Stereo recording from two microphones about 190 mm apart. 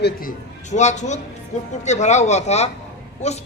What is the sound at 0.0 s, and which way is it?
A man's voice, 50° left (ahead or behind).